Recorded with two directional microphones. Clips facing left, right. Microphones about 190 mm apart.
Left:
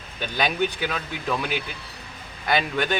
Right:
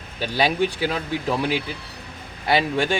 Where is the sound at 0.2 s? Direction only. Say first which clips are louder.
Right 3 dB; 30° right (ahead or behind).